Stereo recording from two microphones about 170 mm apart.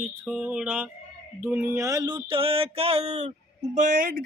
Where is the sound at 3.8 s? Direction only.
55° right (ahead or behind).